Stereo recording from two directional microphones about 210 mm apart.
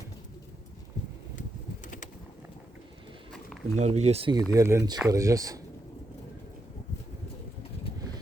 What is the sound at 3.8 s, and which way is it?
Speech, 30° right (ahead or behind).